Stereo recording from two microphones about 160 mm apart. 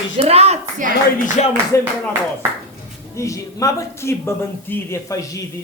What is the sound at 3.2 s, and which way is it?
Speech, 20° left (ahead or behind).